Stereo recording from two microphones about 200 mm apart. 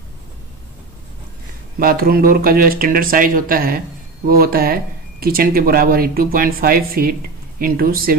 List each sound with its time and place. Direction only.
1.8 s speech: 50° right (ahead or behind)